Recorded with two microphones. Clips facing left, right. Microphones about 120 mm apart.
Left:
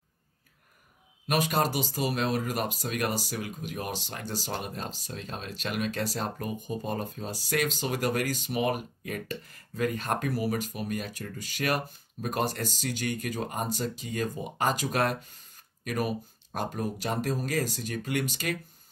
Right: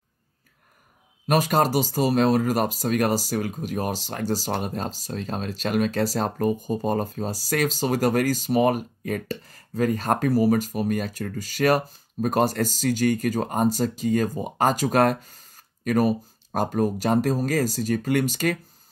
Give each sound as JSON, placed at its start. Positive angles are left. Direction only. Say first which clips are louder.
{"t": 1.2, "sound": "speech", "louder": "right 6 dB", "side_deg": -40}